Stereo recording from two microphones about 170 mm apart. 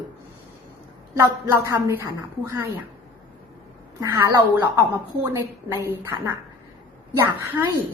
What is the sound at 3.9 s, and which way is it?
Speech, 15° right (ahead or behind).